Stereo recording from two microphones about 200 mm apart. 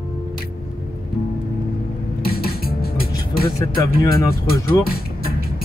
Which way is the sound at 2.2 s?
50° left (ahead or behind).